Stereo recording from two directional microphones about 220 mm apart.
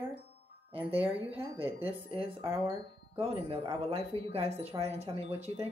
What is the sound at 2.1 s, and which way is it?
Speech, 25° right (ahead or behind).